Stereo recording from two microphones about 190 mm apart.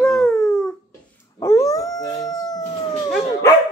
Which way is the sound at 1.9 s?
20° left (ahead or behind).